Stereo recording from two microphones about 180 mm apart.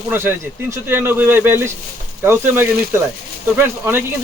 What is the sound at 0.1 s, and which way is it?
Speech, 10° right (ahead or behind).